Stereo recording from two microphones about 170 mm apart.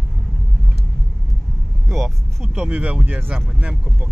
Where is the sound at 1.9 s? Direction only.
Centre (ahead or behind).